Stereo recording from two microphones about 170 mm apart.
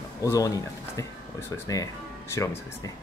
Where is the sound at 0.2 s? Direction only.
20° left (ahead or behind).